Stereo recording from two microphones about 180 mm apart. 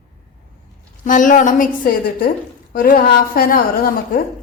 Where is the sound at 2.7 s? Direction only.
50° left (ahead or behind).